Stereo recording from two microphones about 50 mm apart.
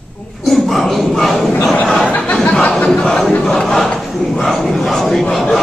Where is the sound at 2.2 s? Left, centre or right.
Centre.